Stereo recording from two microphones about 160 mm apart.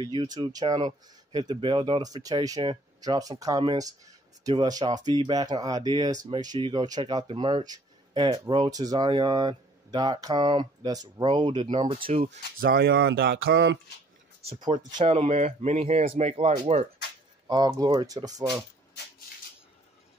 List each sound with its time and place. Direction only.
0.0 s speech: 30° right (ahead or behind)
12.3 s speech: 75° right (ahead or behind); by 13.7 s 90° right
14.5 s speech: 25° right (ahead or behind)
15.0 s speech: 40° right (ahead or behind)
17.5 s speech: 25° right (ahead or behind)